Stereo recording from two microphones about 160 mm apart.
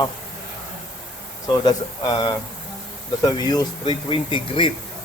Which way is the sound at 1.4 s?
25° left (ahead or behind).